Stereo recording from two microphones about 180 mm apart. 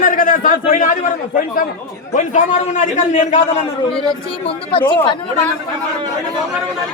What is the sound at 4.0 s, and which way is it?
Speech, 30° left (ahead or behind).